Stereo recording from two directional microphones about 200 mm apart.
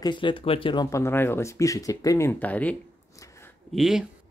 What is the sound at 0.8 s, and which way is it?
Speech, 15° left (ahead or behind).